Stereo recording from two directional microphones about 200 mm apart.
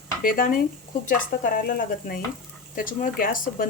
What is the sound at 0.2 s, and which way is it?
Speech, 45° left (ahead or behind).